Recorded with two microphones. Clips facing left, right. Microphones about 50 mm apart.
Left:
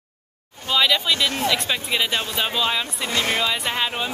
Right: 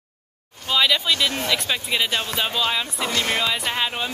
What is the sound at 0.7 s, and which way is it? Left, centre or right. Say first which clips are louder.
Speech: even; centre.